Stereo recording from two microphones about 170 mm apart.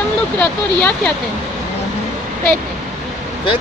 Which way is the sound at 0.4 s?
10° left (ahead or behind).